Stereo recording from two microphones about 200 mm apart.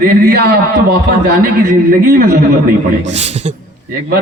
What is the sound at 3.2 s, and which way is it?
Speech, 35° right (ahead or behind).